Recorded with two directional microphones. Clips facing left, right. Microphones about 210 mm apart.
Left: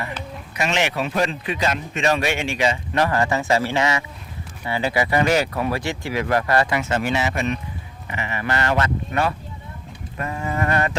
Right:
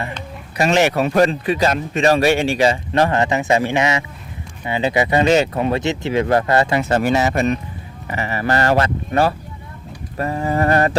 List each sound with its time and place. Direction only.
0.5 s a man's voice: 40° right (ahead or behind)